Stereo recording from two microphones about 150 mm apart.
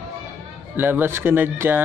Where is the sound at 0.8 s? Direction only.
15° right (ahead or behind).